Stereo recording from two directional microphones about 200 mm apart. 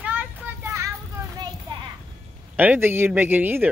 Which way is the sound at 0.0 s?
10° right (ahead or behind).